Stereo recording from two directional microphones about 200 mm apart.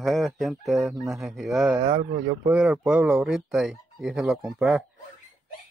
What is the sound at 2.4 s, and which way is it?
Speech, 5° right (ahead or behind).